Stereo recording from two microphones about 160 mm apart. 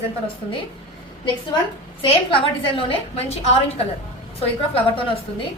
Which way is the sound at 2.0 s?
35° left (ahead or behind).